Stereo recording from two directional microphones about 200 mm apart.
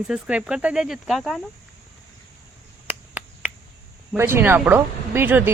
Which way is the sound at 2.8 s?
10° right (ahead or behind).